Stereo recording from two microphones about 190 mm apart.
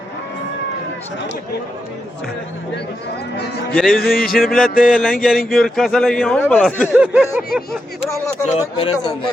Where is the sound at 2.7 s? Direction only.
60° left (ahead or behind).